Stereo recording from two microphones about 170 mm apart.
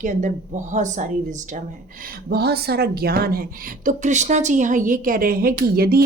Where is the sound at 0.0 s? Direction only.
45° right (ahead or behind).